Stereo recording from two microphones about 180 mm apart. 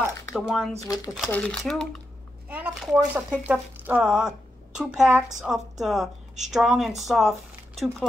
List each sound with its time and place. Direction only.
0.3 s speech: centre (ahead or behind)
0.8 s speech: 20° left (ahead or behind)
1.3 s a woman's voice: 5° left (ahead or behind)
2.4 s a woman's voice: 10° right (ahead or behind)